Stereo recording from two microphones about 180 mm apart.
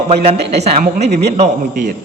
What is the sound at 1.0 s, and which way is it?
Speech, 40° right (ahead or behind).